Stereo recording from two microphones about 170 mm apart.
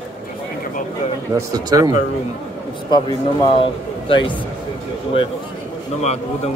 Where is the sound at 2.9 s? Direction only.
30° left (ahead or behind).